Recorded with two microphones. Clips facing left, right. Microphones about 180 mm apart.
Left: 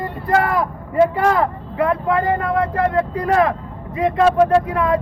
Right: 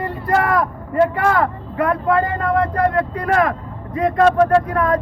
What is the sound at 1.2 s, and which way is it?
Speech, 20° left (ahead or behind).